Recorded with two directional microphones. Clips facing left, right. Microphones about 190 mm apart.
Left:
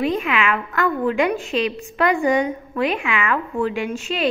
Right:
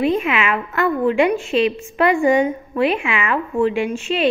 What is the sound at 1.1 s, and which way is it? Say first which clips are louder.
Speech: right 4 dB; 40° left (ahead or behind).